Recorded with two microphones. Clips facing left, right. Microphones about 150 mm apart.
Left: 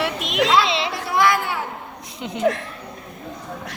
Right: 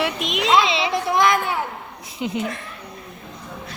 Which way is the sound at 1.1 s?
20° right (ahead or behind).